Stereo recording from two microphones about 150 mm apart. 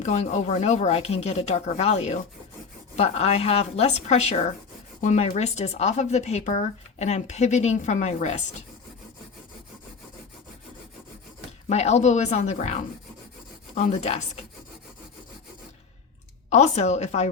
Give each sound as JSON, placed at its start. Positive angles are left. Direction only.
{"t": 0.0, "sound": "speech", "side_deg": 50}
{"t": 11.7, "sound": "speech", "side_deg": 45}
{"t": 16.5, "sound": "speech", "side_deg": 50}